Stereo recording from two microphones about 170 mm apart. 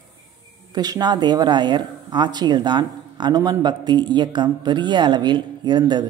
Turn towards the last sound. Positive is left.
turn(degrees=-25)  # may be behind; listen again after turning